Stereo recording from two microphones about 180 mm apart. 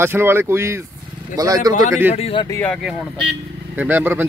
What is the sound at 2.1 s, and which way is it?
Speech, 30° left (ahead or behind).